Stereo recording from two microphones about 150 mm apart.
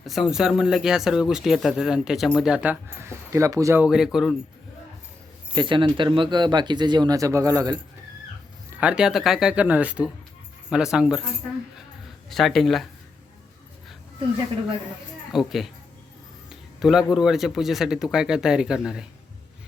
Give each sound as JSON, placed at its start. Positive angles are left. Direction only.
{"t": 0.0, "sound": "speech", "side_deg": 0}
{"t": 3.8, "sound": "speech", "side_deg": -5}
{"t": 5.5, "sound": "speech", "side_deg": -35}
{"t": 8.8, "sound": "speech", "side_deg": -5}
{"t": 12.3, "sound": "speech", "side_deg": 0}
{"t": 15.3, "sound": "speech", "side_deg": 0}